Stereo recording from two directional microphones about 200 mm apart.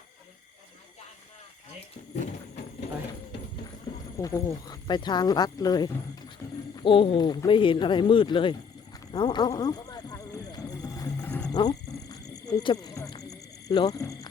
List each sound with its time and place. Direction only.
4.2 s speech: 15° left (ahead or behind)
9.1 s music: 20° left (ahead or behind)
11.3 s wild animals: 5° left (ahead or behind)
11.5 s a sound: 20° left (ahead or behind)